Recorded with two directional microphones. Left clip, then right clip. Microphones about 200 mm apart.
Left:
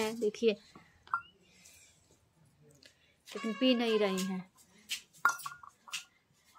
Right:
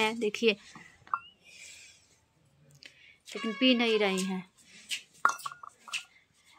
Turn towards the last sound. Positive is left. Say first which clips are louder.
# right 4 dB
turn(degrees=-25)  # may be behind; listen again after turning